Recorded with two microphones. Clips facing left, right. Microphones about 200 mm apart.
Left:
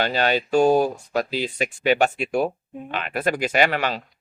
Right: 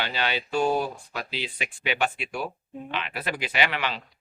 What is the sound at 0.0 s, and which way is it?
Speech, 45° left (ahead or behind).